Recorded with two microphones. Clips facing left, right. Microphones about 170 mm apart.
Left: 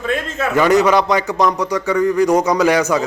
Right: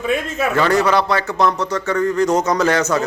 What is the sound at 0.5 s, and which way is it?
A man's voice, 15° left (ahead or behind).